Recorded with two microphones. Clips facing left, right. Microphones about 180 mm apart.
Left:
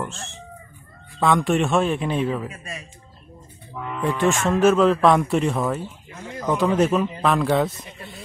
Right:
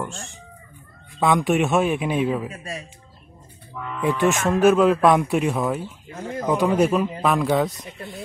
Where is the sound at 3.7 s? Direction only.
20° left (ahead or behind).